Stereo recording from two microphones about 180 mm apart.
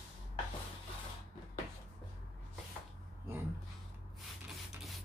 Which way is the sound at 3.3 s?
15° right (ahead or behind).